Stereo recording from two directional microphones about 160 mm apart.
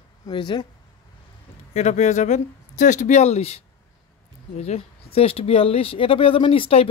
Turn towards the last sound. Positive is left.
turn(degrees=35)  # may be behind; listen again after turning